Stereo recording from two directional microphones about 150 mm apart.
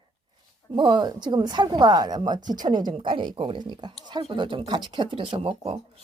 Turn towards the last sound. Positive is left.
turn(degrees=-40)  # may be behind; listen again after turning